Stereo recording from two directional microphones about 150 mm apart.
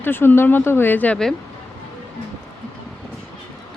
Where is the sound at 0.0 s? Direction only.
15° left (ahead or behind).